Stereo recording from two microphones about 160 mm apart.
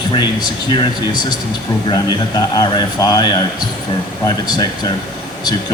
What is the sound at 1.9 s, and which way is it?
A man's voice, 25° left (ahead or behind).